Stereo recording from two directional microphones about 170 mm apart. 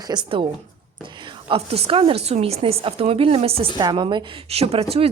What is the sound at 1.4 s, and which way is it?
A woman's voice, 35° right (ahead or behind).